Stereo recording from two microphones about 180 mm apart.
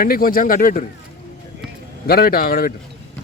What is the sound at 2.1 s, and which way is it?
Speech, 60° left (ahead or behind).